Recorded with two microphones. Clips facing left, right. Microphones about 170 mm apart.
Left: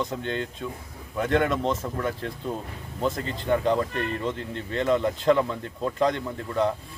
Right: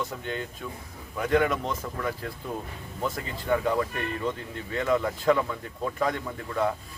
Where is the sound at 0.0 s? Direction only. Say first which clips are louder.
Left 4 dB; 20° left (ahead or behind).